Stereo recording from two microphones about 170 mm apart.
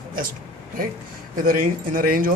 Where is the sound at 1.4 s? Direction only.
55° right (ahead or behind).